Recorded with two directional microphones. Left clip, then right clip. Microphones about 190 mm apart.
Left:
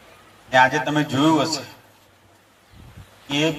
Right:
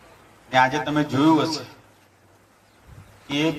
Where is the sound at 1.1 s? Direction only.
40° left (ahead or behind).